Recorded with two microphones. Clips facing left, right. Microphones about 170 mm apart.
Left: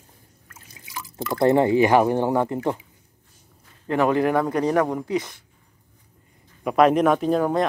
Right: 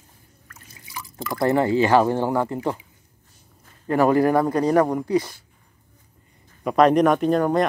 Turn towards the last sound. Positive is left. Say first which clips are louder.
# right 1 dB
turn(degrees=0)  # may be behind; listen again after turning